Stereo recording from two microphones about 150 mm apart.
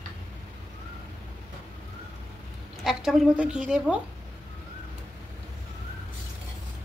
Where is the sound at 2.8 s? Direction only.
5° right (ahead or behind).